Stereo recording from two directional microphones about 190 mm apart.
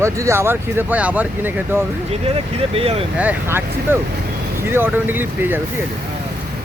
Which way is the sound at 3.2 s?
10° right (ahead or behind).